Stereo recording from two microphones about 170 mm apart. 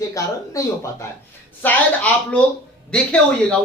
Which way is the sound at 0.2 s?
20° left (ahead or behind).